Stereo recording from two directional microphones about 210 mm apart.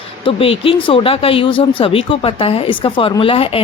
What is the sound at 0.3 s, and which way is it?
Speech, 25° left (ahead or behind).